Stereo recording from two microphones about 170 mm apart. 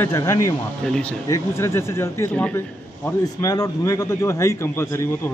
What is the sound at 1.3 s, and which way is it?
Speech, 15° left (ahead or behind).